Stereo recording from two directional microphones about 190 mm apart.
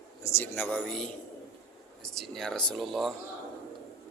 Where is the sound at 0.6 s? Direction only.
Centre (ahead or behind).